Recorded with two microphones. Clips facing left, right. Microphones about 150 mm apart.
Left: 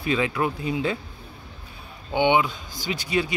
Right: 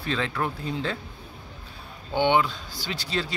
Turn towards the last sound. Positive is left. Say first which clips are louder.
# left 5 dB
turn(degrees=15)  # may be behind; listen again after turning